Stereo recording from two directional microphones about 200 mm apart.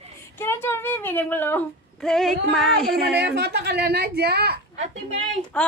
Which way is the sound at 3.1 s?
55° right (ahead or behind).